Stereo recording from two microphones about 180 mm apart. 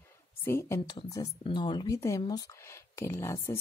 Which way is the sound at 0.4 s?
15° left (ahead or behind).